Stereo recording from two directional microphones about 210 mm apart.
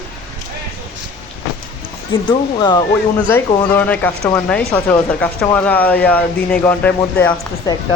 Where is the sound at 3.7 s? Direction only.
10° left (ahead or behind).